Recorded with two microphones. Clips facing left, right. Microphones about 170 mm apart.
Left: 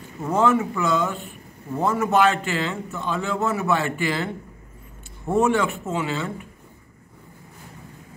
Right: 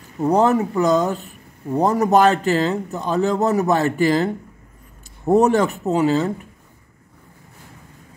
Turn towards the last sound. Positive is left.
turn(degrees=-40)  # may be behind; listen again after turning